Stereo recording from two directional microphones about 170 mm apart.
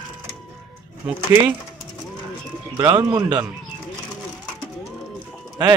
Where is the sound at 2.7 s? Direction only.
20° right (ahead or behind).